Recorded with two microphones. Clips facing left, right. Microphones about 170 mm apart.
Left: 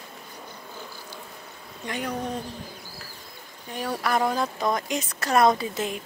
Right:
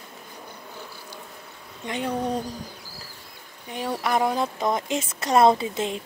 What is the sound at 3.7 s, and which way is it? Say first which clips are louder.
A woman's voice: right 1 dB; 20° right (ahead or behind).